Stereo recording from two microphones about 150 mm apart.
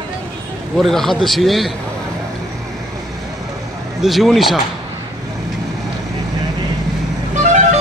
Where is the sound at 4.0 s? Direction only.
Centre (ahead or behind).